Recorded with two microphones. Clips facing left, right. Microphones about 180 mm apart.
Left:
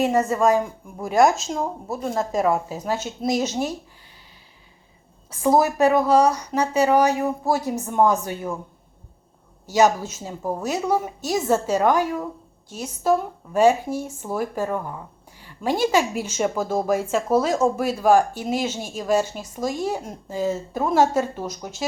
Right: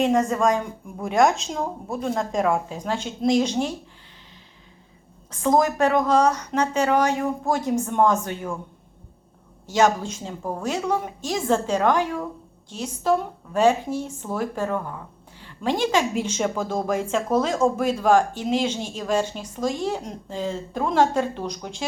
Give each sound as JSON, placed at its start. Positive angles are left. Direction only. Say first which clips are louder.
{"t": 0.0, "sound": "a woman's voice", "louder": "left 1 dB", "side_deg": 5}
{"t": 5.3, "sound": "speech", "louder": "left 1 dB", "side_deg": 10}
{"t": 9.6, "sound": "speech", "louder": "left 2 dB", "side_deg": 10}